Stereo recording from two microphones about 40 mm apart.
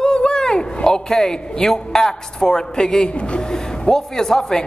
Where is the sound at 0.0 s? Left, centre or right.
Left.